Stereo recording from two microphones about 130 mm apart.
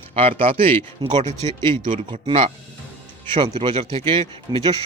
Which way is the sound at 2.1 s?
40° right (ahead or behind).